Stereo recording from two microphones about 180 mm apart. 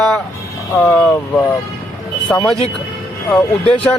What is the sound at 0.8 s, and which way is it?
Speech, 10° left (ahead or behind).